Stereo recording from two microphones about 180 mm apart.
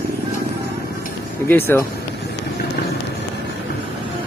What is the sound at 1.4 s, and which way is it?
Speech, 10° left (ahead or behind).